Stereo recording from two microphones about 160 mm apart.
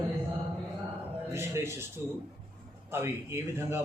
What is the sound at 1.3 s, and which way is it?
Speech, 15° right (ahead or behind).